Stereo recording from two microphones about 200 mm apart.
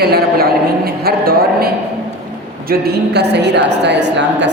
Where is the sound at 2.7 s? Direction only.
50° right (ahead or behind).